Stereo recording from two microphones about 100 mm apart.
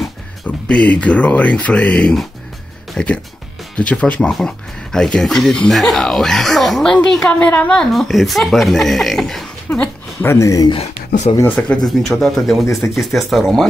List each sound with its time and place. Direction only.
0.5 s speech: 15° left (ahead or behind)
9.7 s speech: 15° left (ahead or behind)
10.2 s speech: 30° left (ahead or behind)
10.7 s speech: 85° left
11.4 s speech: 15° left (ahead or behind)
11.8 s speech: centre (ahead or behind)